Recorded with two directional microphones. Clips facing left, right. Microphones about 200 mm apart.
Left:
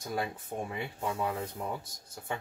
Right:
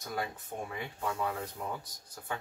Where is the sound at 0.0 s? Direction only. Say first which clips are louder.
Left 3 dB; 30° left (ahead or behind).